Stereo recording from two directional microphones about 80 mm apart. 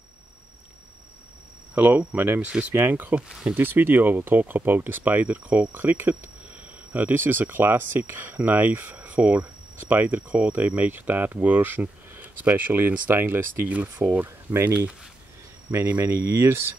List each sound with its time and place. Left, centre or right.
1.8 s speech: right
3.3 s speech: centre
3.5 s speech: right